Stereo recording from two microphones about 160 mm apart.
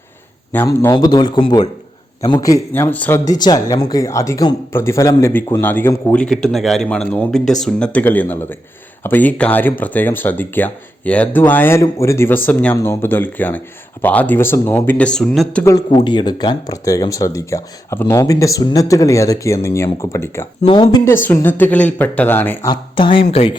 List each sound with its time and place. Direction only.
0.5 s speech: 15° left (ahead or behind)
0.9 s speech: 25° left (ahead or behind)
3.2 s speech: 25° left (ahead or behind); by 15.6 s 5° left (ahead or behind)
15.6 s speech: 20° left (ahead or behind)
20.7 s speech: 30° left (ahead or behind)
21.2 s speech: 10° left (ahead or behind)
22.7 s speech: 30° left (ahead or behind)